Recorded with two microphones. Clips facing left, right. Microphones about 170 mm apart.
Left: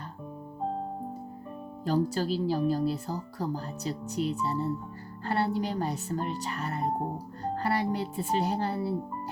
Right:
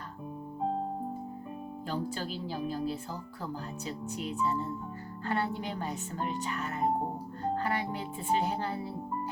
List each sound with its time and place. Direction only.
1.9 s speech: 40° left (ahead or behind)